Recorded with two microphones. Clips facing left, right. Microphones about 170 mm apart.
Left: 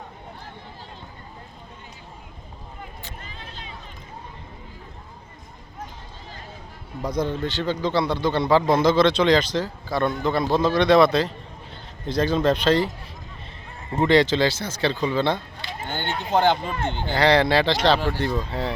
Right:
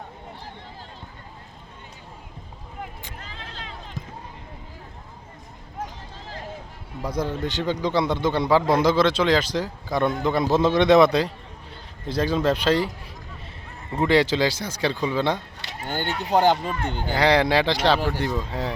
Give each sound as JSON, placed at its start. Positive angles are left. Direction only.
{"t": 3.4, "sound": "a sound", "side_deg": -90}
{"t": 7.0, "sound": "a man's voice", "side_deg": -10}
{"t": 13.9, "sound": "a man's voice", "side_deg": -5}
{"t": 15.9, "sound": "speech", "side_deg": -40}
{"t": 17.0, "sound": "a man's voice", "side_deg": -10}